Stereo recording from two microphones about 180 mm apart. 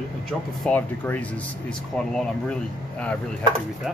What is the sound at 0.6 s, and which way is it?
Speech, 10° left (ahead or behind).